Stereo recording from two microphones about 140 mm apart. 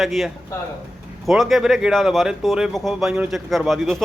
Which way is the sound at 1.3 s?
Centre (ahead or behind).